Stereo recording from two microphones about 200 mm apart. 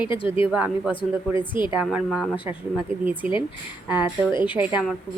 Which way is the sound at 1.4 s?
25° left (ahead or behind).